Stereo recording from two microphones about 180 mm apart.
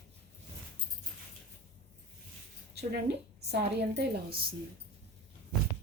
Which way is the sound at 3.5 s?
65° right (ahead or behind).